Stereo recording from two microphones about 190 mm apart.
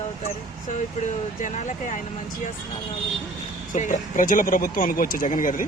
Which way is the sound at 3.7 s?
40° left (ahead or behind).